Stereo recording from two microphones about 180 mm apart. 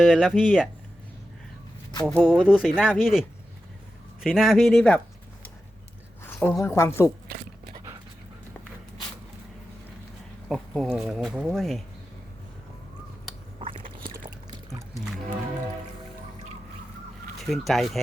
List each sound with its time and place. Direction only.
0.0 s speech: 5° right (ahead or behind)
2.0 s speech: centre (ahead or behind)
6.2 s speech: 10° left (ahead or behind)
7.3 s speech: 55° right (ahead or behind)
10.5 s speech: centre (ahead or behind)
14.9 s music: centre (ahead or behind)
17.3 s speech: centre (ahead or behind)